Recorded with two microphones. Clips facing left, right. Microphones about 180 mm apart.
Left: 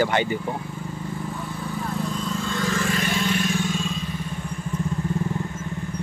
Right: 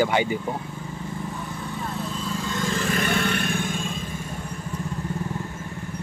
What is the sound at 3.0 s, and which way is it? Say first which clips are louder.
Vehicle: even; 60° right (ahead or behind).